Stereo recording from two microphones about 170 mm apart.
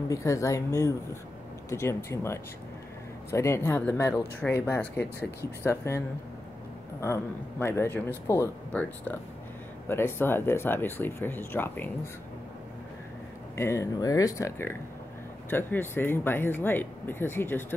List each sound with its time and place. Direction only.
0.1 s speech: 20° left (ahead or behind)
13.6 s speech: 15° left (ahead or behind)